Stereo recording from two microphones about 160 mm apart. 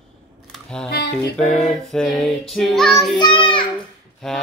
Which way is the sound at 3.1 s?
30° left (ahead or behind).